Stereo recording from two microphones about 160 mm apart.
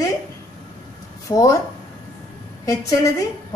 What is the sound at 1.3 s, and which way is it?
Speech, 20° left (ahead or behind).